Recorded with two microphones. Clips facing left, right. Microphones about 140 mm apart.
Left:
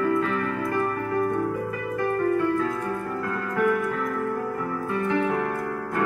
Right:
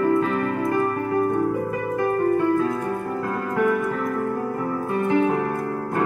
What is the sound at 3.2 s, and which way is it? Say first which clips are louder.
Music: right 2 dB; 35° right (ahead or behind).